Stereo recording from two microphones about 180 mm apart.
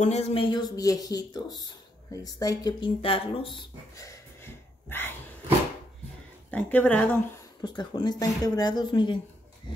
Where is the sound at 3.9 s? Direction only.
15° left (ahead or behind).